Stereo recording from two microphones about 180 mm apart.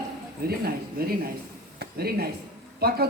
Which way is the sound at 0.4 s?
60° right (ahead or behind).